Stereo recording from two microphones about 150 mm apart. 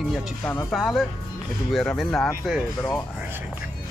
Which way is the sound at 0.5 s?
10° left (ahead or behind).